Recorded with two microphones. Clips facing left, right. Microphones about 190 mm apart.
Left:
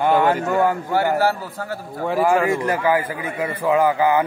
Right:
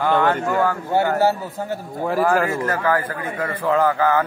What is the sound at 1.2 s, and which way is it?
Speech, 20° right (ahead or behind).